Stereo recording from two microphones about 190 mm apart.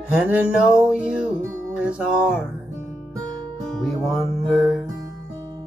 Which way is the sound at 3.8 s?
Centre (ahead or behind).